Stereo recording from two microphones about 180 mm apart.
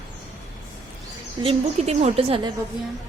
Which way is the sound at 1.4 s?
35° right (ahead or behind).